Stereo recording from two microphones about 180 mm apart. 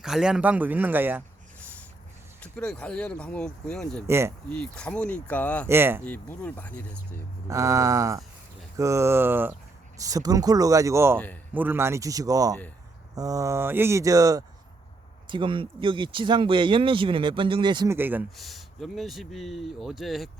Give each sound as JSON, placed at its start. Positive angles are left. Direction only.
{"t": 0.0, "sound": "speech", "side_deg": -5}
{"t": 2.4, "sound": "speech", "side_deg": 5}
{"t": 4.0, "sound": "speech", "side_deg": -15}
{"t": 4.4, "sound": "speech", "side_deg": 5}
{"t": 5.6, "sound": "speech", "side_deg": -10}
{"t": 6.1, "sound": "speech", "side_deg": 10}
{"t": 7.5, "sound": "speech", "side_deg": -20}
{"t": 17.9, "sound": "speech", "side_deg": -10}
{"t": 18.3, "sound": "speech", "side_deg": 0}